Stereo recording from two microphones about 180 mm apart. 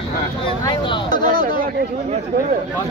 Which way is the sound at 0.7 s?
25° left (ahead or behind).